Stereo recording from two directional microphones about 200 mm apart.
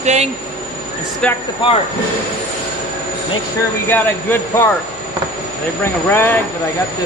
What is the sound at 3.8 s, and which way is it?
Speech, 10° left (ahead or behind).